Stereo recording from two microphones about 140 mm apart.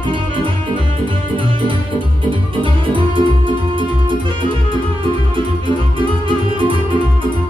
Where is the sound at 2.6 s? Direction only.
35° right (ahead or behind).